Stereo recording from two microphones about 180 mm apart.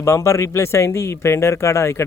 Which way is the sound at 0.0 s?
15° left (ahead or behind).